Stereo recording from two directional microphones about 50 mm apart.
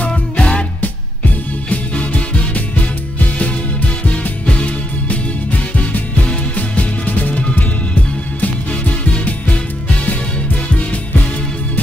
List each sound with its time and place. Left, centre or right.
0.0 s music: left
4.5 s music: left
6.5 s music: left
9.0 s music: left